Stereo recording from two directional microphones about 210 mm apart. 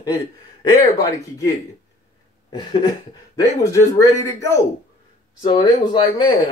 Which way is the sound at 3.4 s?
15° left (ahead or behind).